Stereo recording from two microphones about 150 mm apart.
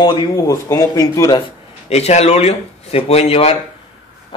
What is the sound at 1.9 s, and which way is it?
Speech, 45° left (ahead or behind).